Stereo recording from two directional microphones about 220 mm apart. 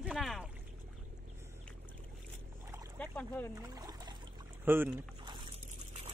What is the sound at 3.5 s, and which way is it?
Boat, 15° right (ahead or behind).